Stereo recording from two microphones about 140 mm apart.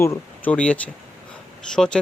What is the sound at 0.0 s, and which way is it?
Speech, 20° left (ahead or behind).